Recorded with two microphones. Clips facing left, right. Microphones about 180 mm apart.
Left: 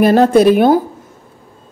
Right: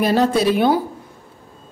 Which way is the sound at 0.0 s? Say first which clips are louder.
Left 7 dB; 55° left (ahead or behind).